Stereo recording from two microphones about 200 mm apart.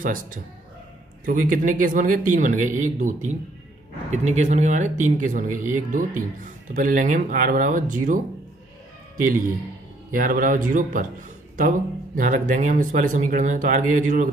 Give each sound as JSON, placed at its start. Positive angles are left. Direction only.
{"t": 0.0, "sound": "a man's voice", "side_deg": -45}
{"t": 10.1, "sound": "speech", "side_deg": -45}
{"t": 12.2, "sound": "a man's voice", "side_deg": -40}